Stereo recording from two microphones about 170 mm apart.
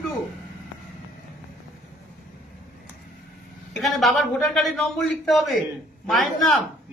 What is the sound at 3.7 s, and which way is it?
A man's voice, centre (ahead or behind).